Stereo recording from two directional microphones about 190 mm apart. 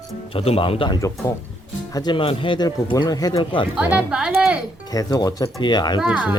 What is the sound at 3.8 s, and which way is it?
Speech, 5° right (ahead or behind).